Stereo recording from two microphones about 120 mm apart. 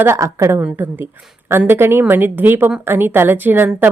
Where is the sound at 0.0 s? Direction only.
25° right (ahead or behind).